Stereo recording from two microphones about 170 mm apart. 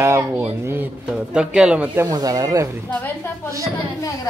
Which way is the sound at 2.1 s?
20° right (ahead or behind).